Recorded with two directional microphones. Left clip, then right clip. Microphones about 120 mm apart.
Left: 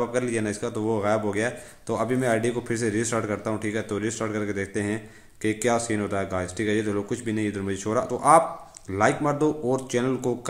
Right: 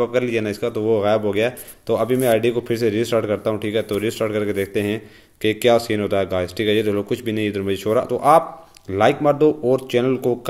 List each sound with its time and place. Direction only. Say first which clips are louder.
0.0 s a man's voice: right 6 dB; 15° right (ahead or behind)